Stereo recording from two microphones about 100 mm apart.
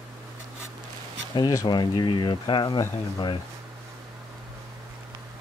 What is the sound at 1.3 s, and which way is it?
Speech, 35° left (ahead or behind).